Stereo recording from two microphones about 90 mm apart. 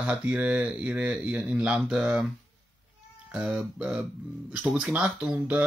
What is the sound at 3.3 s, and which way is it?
Speech, 15° right (ahead or behind).